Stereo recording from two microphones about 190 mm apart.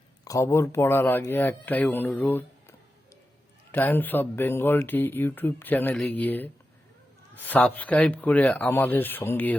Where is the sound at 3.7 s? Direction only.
10° left (ahead or behind).